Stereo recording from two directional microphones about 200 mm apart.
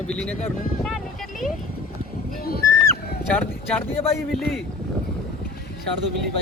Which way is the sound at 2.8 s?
10° left (ahead or behind).